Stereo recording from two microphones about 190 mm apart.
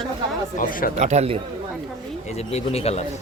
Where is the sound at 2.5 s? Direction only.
30° left (ahead or behind).